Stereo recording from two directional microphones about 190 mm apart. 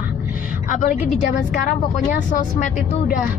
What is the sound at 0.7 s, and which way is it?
A woman's voice, 45° left (ahead or behind).